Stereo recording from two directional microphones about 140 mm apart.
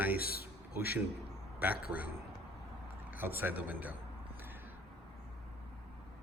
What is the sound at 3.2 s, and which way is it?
Speech, 15° right (ahead or behind).